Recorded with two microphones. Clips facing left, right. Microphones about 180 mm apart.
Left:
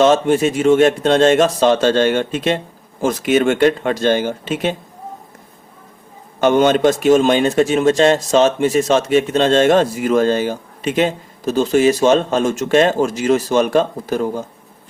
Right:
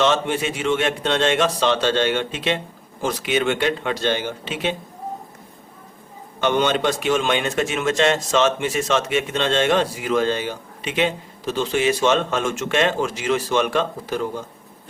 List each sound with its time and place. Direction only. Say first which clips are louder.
0.0 s speech: left 7 dB; 40° left (ahead or behind)
6.4 s a man's voice: left 7 dB; 45° left (ahead or behind)